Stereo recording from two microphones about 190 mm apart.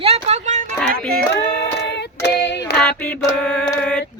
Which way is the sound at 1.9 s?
65° left (ahead or behind).